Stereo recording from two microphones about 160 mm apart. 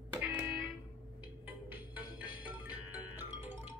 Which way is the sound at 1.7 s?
10° right (ahead or behind).